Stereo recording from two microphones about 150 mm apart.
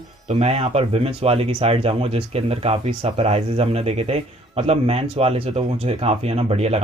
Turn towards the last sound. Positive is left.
turn(degrees=-40)  # may be behind; listen again after turning